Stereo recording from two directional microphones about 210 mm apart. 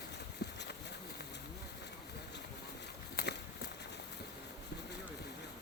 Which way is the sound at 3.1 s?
50° left (ahead or behind).